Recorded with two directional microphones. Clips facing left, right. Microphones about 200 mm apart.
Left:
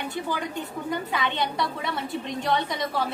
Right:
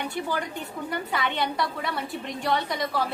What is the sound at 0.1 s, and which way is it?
A woman's voice, 20° left (ahead or behind).